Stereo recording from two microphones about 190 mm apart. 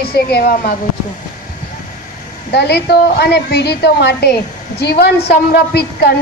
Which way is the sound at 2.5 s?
60° left (ahead or behind).